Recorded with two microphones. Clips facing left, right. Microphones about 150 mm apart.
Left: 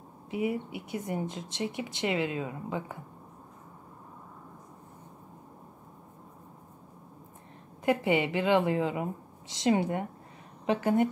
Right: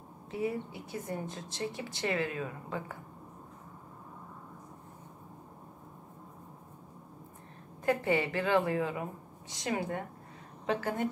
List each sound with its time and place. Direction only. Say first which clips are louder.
0.3 s speech: left 3 dB; 15° left (ahead or behind)
7.8 s speech: left 3 dB; 15° left (ahead or behind)